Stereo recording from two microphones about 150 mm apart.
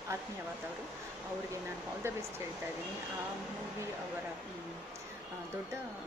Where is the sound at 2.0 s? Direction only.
15° right (ahead or behind).